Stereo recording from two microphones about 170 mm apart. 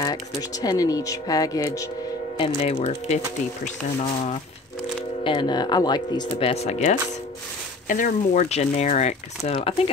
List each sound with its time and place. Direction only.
0.0 s speech: 20° left (ahead or behind)
2.3 s speech: 30° left (ahead or behind)
5.2 s speech: 30° left (ahead or behind)
6.5 s speech: 40° left (ahead or behind)